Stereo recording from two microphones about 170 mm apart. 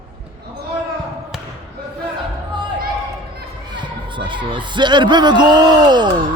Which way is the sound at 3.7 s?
30° right (ahead or behind).